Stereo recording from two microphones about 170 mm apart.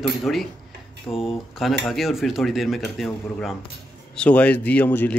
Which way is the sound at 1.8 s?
Centre (ahead or behind).